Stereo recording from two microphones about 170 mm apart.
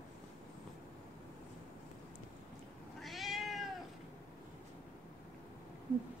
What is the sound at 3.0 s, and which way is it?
Cat, centre (ahead or behind).